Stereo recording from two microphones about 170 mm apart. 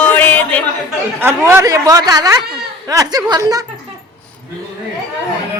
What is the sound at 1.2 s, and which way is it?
Speech, 15° right (ahead or behind).